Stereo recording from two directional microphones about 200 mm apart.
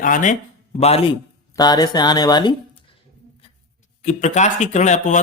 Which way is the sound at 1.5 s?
20° left (ahead or behind).